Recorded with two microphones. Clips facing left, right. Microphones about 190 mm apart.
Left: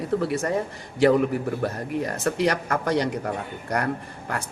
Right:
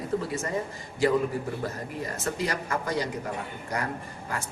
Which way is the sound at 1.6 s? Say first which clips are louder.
Left 6 dB; 70° left (ahead or behind).